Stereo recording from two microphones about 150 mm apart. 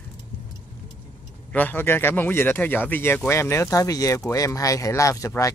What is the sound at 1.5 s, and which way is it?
Speech, 10° left (ahead or behind).